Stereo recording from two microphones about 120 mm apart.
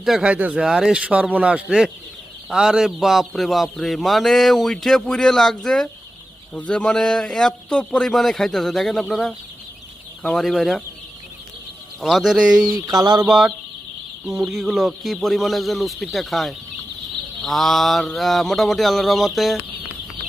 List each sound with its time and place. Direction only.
0.0 s speech: 5° right (ahead or behind)
11.9 s speech: centre (ahead or behind)
12.6 s a sound: 35° right (ahead or behind)
13.2 s speech: 5° right (ahead or behind)